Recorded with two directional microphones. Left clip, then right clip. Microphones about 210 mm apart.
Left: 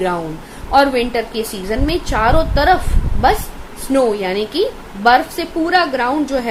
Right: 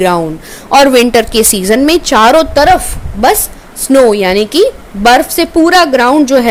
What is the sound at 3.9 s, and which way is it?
A woman's voice, 45° right (ahead or behind).